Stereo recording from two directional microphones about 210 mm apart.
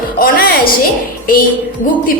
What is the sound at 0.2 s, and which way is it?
Music, 45° left (ahead or behind).